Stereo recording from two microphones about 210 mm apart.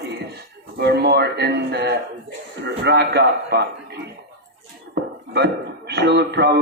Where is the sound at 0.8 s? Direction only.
55° right (ahead or behind).